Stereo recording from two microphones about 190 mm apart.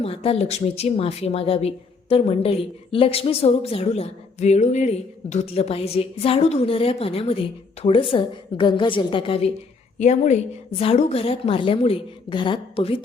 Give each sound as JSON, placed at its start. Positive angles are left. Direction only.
{"t": 0.0, "sound": "a woman's voice", "side_deg": 30}